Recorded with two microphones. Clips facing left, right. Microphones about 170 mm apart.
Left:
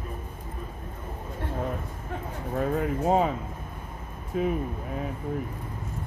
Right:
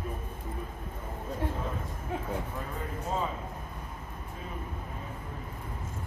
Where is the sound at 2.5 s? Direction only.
75° left (ahead or behind).